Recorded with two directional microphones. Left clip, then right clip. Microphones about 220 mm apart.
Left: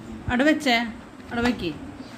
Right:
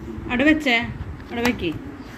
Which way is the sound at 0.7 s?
25° left (ahead or behind).